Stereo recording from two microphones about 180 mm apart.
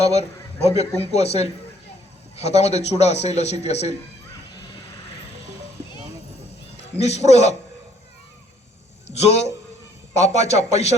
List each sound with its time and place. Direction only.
0.0 s a man's voice: 35° left (ahead or behind)
7.0 s a man's voice: 35° left (ahead or behind)
9.0 s a man's voice: 35° left (ahead or behind)